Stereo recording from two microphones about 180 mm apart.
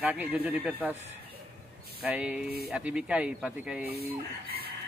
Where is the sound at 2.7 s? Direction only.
5° right (ahead or behind).